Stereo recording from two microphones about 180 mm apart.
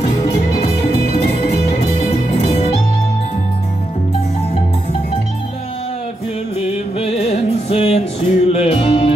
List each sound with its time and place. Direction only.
2.4 s music: 35° left (ahead or behind)
7.0 s music: 35° left (ahead or behind)